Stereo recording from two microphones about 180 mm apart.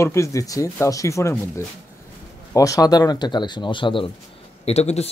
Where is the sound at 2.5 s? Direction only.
20° left (ahead or behind).